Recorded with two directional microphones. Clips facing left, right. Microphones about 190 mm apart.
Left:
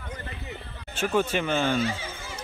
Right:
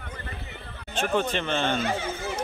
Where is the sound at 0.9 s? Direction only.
10° left (ahead or behind).